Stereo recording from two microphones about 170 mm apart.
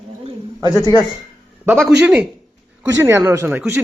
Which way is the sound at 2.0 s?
10° right (ahead or behind).